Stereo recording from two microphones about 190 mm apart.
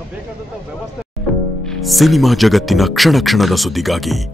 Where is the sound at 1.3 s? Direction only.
Centre (ahead or behind).